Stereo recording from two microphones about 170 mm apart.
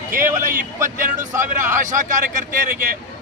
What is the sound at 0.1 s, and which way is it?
Speech, 50° right (ahead or behind).